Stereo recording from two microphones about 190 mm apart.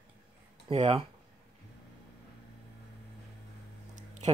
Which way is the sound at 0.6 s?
30° right (ahead or behind).